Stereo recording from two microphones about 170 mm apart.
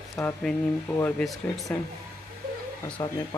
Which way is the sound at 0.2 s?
5° left (ahead or behind).